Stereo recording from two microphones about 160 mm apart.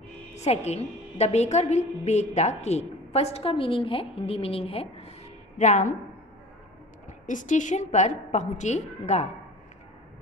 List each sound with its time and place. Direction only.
0.3 s a woman's voice: 45° left (ahead or behind)
7.2 s a woman's voice: 50° left (ahead or behind)